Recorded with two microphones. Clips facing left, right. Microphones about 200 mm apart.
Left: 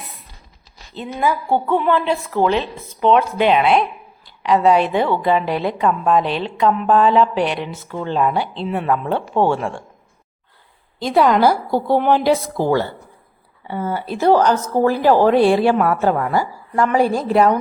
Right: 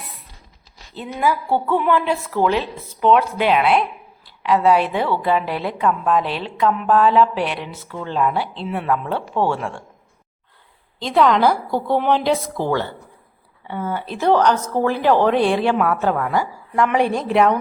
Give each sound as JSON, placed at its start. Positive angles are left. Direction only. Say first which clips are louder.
{"t": 0.9, "sound": "a woman's voice", "louder": "left 1 dB", "side_deg": -5}
{"t": 1.5, "sound": "a woman's voice", "louder": "left 1 dB", "side_deg": 15}
{"t": 1.8, "sound": "a woman's voice", "louder": "left 1 dB", "side_deg": -10}
{"t": 7.9, "sound": "speech", "louder": "left 4 dB", "side_deg": 20}
{"t": 8.3, "sound": "a woman's voice", "louder": "left 2 dB", "side_deg": -5}
{"t": 9.1, "sound": "speech", "louder": "left 3 dB", "side_deg": 25}
{"t": 9.6, "sound": "a woman's voice", "louder": "left 3 dB", "side_deg": 0}
{"t": 11.0, "sound": "a woman's voice", "louder": "left 2 dB", "side_deg": 5}